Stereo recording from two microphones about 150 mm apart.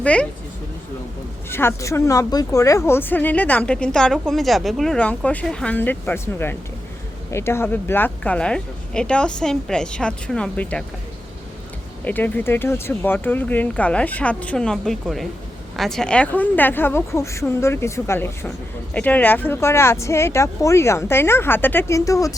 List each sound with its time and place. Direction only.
0.0 s speech: 10° left (ahead or behind)
1.5 s speech: 15° left (ahead or behind)
12.0 s speech: 10° left (ahead or behind)